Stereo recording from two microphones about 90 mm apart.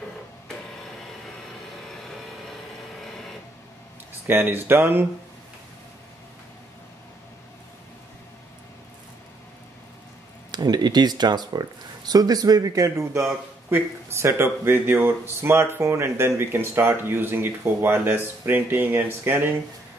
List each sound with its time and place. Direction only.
4.3 s speech: 25° right (ahead or behind)
10.5 s speech: 50° right (ahead or behind); by 19.6 s 25° right (ahead or behind)